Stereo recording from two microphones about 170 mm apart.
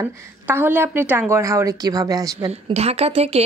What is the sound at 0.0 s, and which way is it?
A woman's voice, 10° right (ahead or behind).